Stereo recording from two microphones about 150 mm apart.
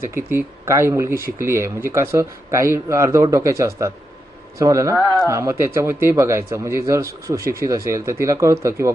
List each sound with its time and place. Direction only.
0.0 s speech: 15° right (ahead or behind)